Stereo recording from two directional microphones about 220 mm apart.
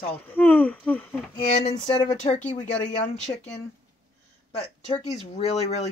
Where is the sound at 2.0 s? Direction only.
35° left (ahead or behind).